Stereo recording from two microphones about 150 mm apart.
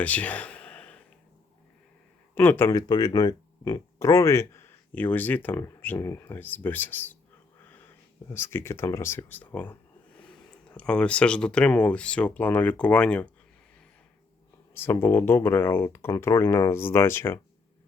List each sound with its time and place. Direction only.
0.0 s a sound: 10° left (ahead or behind)
2.3 s speech: 15° left (ahead or behind)
8.3 s speech: 15° left (ahead or behind)
14.7 s speech: 15° left (ahead or behind)